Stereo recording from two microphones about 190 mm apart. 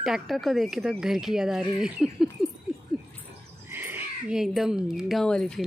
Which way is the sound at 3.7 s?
10° right (ahead or behind).